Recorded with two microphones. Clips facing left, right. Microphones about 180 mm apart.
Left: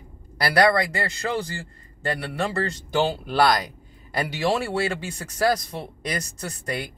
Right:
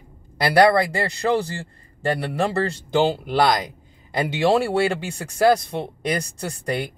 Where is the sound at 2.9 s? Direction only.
15° right (ahead or behind).